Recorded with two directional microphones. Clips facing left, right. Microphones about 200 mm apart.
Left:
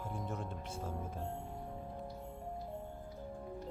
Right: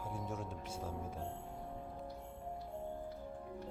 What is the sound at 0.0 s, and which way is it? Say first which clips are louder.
Music: left 1 dB; 10° right (ahead or behind).